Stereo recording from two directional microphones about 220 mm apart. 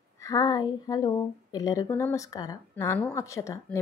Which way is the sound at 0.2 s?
15° left (ahead or behind).